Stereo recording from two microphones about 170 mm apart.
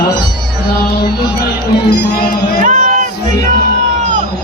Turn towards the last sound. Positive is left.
turn(degrees=-50)  # may be behind; listen again after turning